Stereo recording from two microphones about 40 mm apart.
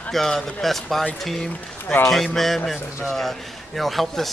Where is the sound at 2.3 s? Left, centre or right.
Centre.